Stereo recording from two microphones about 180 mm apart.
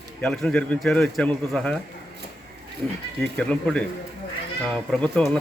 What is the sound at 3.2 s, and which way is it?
Speech, 5° left (ahead or behind).